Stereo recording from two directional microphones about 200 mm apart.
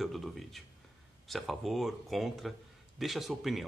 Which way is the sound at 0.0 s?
Centre (ahead or behind).